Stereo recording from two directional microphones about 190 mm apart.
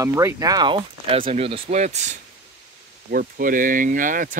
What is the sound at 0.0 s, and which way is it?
Speech, 15° right (ahead or behind).